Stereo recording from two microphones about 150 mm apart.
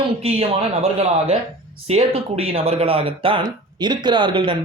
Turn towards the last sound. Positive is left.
turn(degrees=-35)  # may be behind; listen again after turning